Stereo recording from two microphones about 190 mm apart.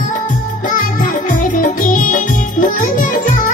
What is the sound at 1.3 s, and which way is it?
Music, 45° left (ahead or behind).